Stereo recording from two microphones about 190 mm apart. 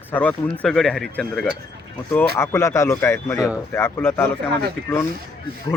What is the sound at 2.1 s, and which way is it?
Speech, 15° left (ahead or behind).